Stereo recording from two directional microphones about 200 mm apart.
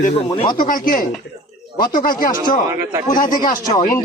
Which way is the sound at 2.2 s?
20° left (ahead or behind).